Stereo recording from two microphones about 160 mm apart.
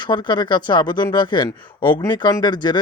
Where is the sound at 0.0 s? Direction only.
30° left (ahead or behind).